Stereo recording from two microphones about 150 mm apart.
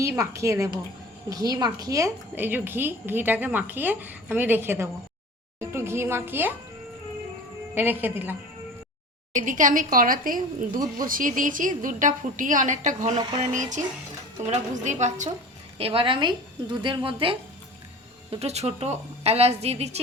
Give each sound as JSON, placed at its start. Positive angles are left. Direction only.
{"t": 0.0, "sound": "a woman's voice", "side_deg": -20}
{"t": 7.8, "sound": "a woman's voice", "side_deg": -15}
{"t": 9.3, "sound": "a woman's voice", "side_deg": -55}
{"t": 15.8, "sound": "a woman's voice", "side_deg": -35}